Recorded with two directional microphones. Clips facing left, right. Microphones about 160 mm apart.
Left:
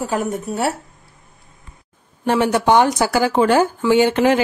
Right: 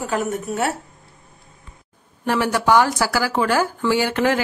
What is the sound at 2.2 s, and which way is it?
Speech, 20° left (ahead or behind).